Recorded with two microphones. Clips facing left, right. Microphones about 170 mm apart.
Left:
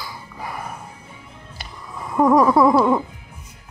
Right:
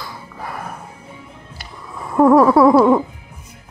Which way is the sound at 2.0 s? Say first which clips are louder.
Right 4 dB; 5° right (ahead or behind).